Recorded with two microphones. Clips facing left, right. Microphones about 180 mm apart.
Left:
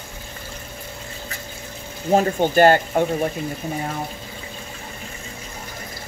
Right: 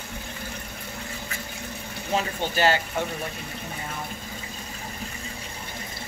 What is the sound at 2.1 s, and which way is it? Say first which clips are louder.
Speech: left 9 dB; 50° left (ahead or behind).